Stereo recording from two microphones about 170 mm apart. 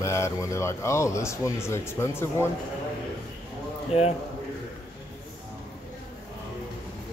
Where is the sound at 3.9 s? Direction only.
40° left (ahead or behind).